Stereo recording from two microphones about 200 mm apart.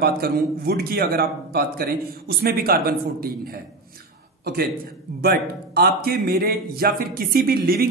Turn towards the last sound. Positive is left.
turn(degrees=-50)  # may be behind; listen again after turning